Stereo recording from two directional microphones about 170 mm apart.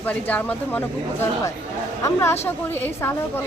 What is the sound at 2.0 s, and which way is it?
A woman's voice, 15° left (ahead or behind).